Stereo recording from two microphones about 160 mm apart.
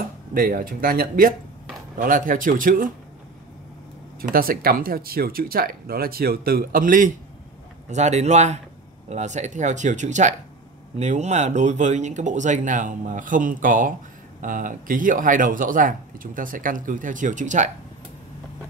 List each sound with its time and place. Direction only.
0.3 s speech: 65° right (ahead or behind)
4.2 s speech: 65° right (ahead or behind)
7.9 s speech: 45° right (ahead or behind)